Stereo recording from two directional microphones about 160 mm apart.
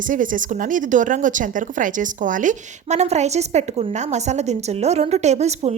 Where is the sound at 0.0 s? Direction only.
55° right (ahead or behind).